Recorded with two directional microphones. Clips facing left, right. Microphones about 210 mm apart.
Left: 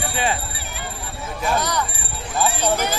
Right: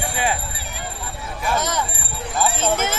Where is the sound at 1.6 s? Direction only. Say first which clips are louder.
Even; 20° right (ahead or behind).